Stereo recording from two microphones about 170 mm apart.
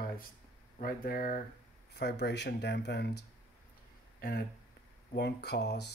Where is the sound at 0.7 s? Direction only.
60° left (ahead or behind).